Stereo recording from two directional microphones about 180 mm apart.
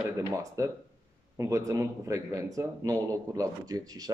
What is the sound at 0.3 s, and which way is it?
Speech, 20° right (ahead or behind).